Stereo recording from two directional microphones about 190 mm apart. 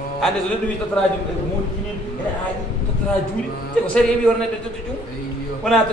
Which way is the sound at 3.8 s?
5° left (ahead or behind).